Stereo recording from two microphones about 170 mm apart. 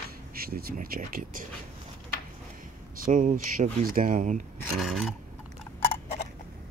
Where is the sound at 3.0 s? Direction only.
50° right (ahead or behind).